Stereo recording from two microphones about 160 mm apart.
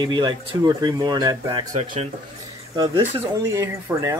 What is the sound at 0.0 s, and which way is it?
Speech, 30° right (ahead or behind).